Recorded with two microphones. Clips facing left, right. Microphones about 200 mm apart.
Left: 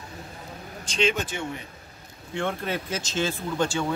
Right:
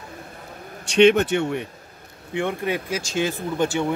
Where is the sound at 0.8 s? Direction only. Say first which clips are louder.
Right 11 dB; 65° right (ahead or behind).